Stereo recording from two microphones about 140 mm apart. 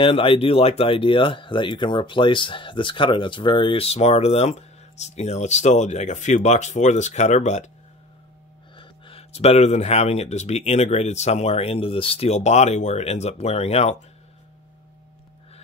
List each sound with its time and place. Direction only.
0.0 s speech: 40° left (ahead or behind); by 7.7 s 55° left (ahead or behind)
8.7 s speech: 40° left (ahead or behind)